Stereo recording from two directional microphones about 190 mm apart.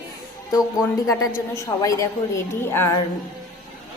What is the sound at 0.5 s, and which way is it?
A woman's voice, 15° left (ahead or behind).